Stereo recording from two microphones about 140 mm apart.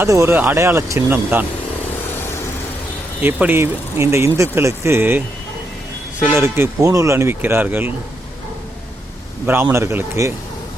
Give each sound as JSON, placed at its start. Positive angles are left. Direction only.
{"t": 0.0, "sound": "speech", "side_deg": -20}
{"t": 2.1, "sound": "vehicle", "side_deg": 15}
{"t": 3.2, "sound": "speech", "side_deg": -10}
{"t": 6.2, "sound": "speech", "side_deg": -15}
{"t": 9.5, "sound": "speech", "side_deg": -15}